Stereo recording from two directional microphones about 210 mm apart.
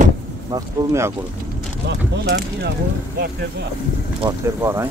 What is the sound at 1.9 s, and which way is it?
Speech, 50° right (ahead or behind).